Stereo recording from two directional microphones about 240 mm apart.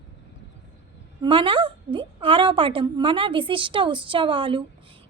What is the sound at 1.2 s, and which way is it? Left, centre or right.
A woman's voice, right.